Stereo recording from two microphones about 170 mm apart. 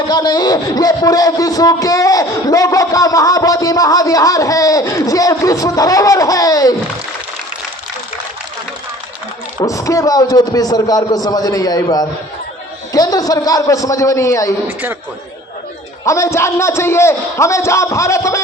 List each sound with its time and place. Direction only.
0.1 s speech: 20° left (ahead or behind)
9.6 s speech: 20° left (ahead or behind)
14.7 s a man's voice: 10° right (ahead or behind)
16.0 s a man's voice: 15° left (ahead or behind)